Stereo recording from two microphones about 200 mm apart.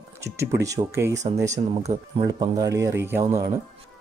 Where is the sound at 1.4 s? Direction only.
35° right (ahead or behind).